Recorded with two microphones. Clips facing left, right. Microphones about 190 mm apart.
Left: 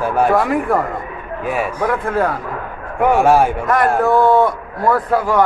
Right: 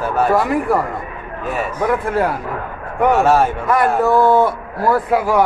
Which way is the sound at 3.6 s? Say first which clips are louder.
Even; centre (ahead or behind).